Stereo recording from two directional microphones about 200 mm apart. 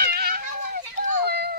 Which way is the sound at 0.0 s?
50° right (ahead or behind).